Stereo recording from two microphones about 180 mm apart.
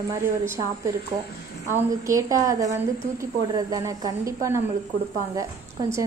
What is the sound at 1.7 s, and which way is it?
A woman's voice, 15° right (ahead or behind).